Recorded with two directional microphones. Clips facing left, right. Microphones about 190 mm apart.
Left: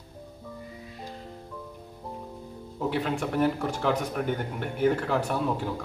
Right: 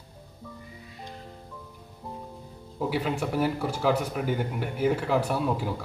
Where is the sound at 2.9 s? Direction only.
5° right (ahead or behind).